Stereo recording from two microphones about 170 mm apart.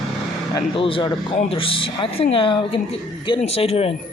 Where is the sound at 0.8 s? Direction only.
30° left (ahead or behind).